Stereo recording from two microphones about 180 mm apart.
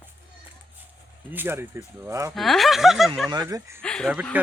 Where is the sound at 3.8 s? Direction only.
5° left (ahead or behind).